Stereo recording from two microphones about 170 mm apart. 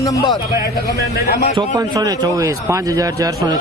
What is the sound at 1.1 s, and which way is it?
Speech, 65° left (ahead or behind).